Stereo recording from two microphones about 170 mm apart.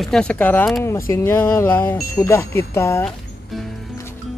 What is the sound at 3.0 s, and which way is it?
Music, centre (ahead or behind).